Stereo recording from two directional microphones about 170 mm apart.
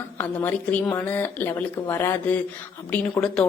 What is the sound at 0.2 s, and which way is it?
Speech, 10° left (ahead or behind).